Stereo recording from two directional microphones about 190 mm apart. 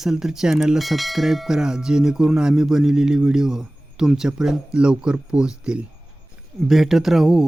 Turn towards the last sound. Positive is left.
turn(degrees=0)  # may be behind; listen again after turning